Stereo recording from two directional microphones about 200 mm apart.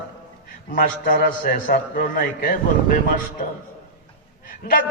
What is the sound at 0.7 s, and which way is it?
A man's voice, 45° left (ahead or behind).